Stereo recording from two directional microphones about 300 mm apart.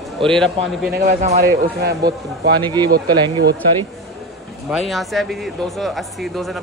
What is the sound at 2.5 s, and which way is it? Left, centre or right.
Speech, centre.